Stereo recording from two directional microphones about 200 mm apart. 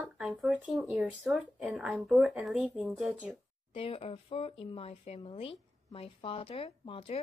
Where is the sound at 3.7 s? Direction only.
30° left (ahead or behind).